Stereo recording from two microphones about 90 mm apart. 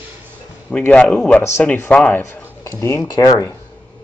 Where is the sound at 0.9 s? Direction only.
10° left (ahead or behind).